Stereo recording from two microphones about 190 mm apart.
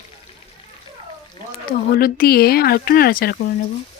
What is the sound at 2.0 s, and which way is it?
Speech, 50° left (ahead or behind).